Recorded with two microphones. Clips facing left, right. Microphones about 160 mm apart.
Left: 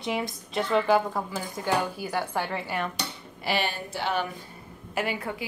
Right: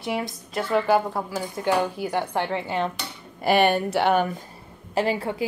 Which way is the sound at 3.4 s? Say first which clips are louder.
Right 10 dB; 55° right (ahead or behind).